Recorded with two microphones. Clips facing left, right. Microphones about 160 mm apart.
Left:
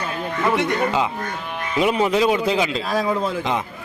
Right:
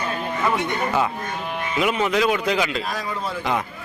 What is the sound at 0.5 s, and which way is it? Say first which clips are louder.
Speech: left 3 dB; 90° left.